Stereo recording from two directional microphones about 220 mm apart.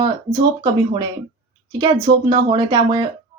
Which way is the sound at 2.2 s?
20° right (ahead or behind).